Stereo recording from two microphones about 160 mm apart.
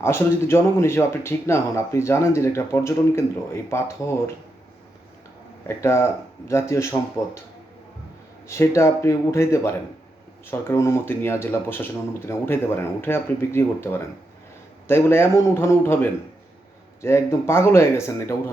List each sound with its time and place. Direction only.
0.0 s speech: 15° left (ahead or behind)
5.6 s speech: 15° left (ahead or behind)
8.4 s speech: 15° left (ahead or behind)